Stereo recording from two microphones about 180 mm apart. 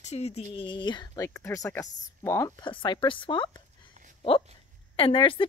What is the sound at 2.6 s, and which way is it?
A woman's voice, 25° left (ahead or behind).